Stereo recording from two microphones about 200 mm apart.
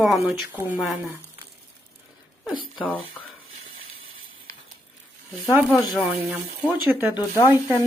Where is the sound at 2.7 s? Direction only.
10° left (ahead or behind).